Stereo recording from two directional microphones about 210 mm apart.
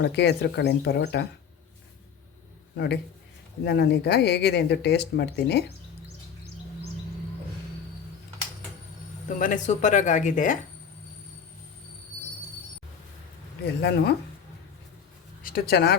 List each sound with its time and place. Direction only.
0.0 s speech: 55° left (ahead or behind)
2.7 s speech: 50° left (ahead or behind)
9.3 s speech: 35° left (ahead or behind)
13.7 s speech: 50° left (ahead or behind)
15.4 s speech: 45° left (ahead or behind)